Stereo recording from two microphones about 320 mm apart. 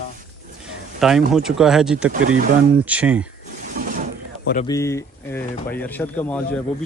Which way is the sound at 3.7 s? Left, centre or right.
Right.